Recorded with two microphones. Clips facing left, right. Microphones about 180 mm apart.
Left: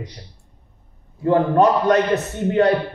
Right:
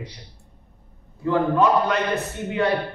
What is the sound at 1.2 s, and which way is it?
A man's voice, 45° left (ahead or behind).